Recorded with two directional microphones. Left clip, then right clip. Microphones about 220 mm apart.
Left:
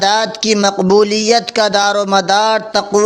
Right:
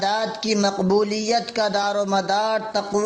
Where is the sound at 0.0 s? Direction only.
30° left (ahead or behind).